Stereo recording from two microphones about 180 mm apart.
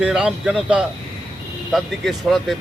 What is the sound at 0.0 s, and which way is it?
Speech, 5° right (ahead or behind).